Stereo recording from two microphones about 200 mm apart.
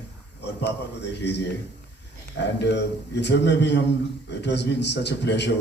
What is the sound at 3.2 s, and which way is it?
A man's voice, 60° left (ahead or behind).